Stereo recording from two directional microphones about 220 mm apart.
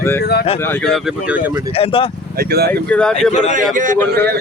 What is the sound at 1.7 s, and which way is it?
Speech, 25° left (ahead or behind).